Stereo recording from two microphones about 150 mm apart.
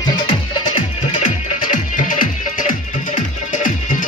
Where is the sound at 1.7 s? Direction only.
65° left (ahead or behind).